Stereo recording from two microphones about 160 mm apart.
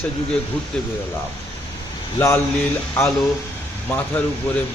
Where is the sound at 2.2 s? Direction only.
10° left (ahead or behind).